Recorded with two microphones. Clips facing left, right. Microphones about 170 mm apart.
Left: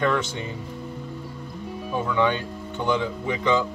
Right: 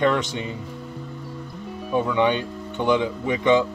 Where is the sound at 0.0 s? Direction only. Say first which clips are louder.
Right 3 dB; 20° right (ahead or behind).